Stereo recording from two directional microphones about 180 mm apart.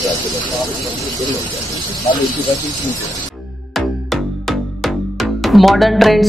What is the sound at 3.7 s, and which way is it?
Music, centre (ahead or behind).